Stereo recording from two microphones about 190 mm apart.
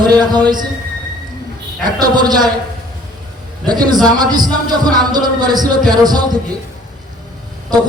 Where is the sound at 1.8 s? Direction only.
20° right (ahead or behind).